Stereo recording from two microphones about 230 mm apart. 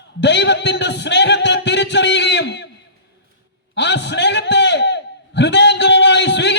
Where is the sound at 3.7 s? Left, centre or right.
Left.